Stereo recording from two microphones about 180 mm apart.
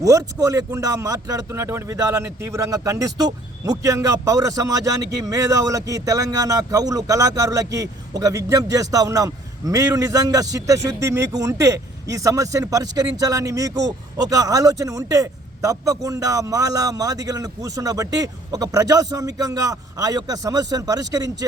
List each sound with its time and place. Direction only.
0.0 s a man's voice: 15° right (ahead or behind)